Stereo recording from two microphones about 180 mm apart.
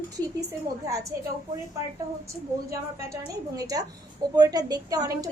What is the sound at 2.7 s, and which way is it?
A woman's voice, 15° right (ahead or behind).